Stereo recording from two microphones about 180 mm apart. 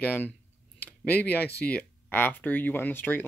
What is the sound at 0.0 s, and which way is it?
Speech, 10° left (ahead or behind).